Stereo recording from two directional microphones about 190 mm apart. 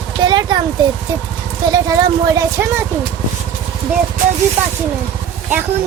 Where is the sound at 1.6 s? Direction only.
20° right (ahead or behind).